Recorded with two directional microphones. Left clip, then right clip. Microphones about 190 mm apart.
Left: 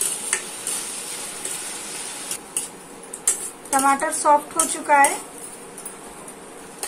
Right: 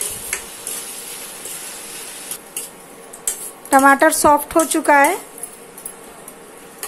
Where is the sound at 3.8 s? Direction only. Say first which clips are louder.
Right 7 dB; 45° right (ahead or behind).